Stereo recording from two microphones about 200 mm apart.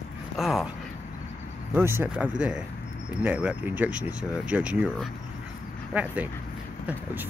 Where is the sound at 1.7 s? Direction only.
10° right (ahead or behind).